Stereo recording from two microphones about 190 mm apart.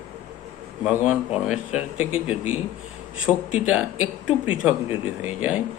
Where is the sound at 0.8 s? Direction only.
5° right (ahead or behind).